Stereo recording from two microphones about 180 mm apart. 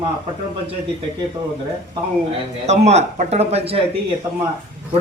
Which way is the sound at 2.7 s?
40° right (ahead or behind).